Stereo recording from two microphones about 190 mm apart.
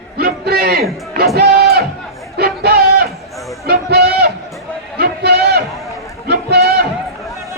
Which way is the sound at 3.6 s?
55° right (ahead or behind).